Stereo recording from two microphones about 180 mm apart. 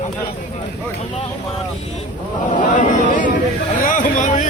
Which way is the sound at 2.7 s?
45° left (ahead or behind).